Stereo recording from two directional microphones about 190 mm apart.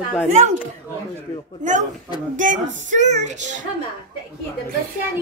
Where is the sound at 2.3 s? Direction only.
40° right (ahead or behind).